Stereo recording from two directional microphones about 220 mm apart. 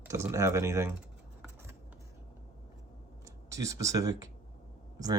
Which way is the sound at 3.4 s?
15° right (ahead or behind).